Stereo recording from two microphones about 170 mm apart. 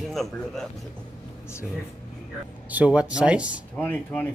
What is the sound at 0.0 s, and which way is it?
Speech, centre (ahead or behind).